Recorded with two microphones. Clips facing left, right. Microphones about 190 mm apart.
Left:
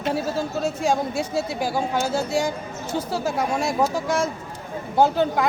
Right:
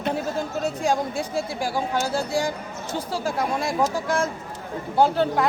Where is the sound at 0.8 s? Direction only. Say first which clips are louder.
Left 1 dB; 15° right (ahead or behind).